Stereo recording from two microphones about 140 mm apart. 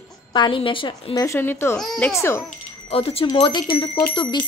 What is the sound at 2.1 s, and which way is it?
Speech, 20° left (ahead or behind).